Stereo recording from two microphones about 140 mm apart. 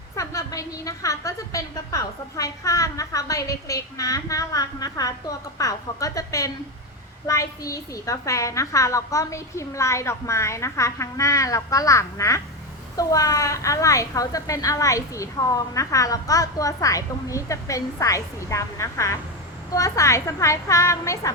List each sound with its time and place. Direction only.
0.2 s a woman's voice: 25° left (ahead or behind)